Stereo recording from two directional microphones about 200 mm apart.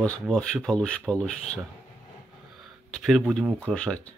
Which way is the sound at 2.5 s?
Centre (ahead or behind).